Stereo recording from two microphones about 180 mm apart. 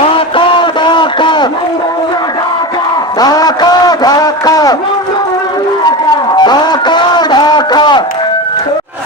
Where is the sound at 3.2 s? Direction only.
20° left (ahead or behind).